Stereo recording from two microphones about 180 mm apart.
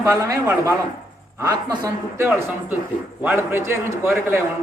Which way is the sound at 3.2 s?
10° right (ahead or behind).